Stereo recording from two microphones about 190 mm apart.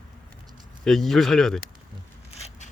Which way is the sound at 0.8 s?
Centre (ahead or behind).